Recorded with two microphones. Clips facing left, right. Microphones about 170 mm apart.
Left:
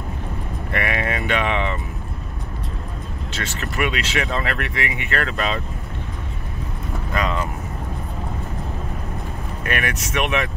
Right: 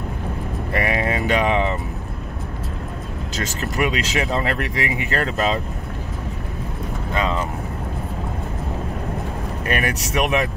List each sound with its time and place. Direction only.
0.7 s speech: 30° right (ahead or behind)
3.3 s speech: 40° right (ahead or behind)
7.2 s vehicle: 30° right (ahead or behind)
9.7 s speech: 35° right (ahead or behind)